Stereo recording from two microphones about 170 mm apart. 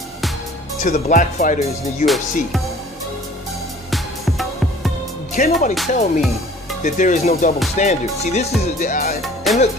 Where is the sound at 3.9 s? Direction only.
Centre (ahead or behind).